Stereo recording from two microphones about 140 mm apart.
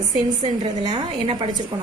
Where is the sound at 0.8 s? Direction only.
35° right (ahead or behind).